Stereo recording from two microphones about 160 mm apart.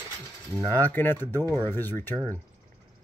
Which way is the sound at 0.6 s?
10° left (ahead or behind).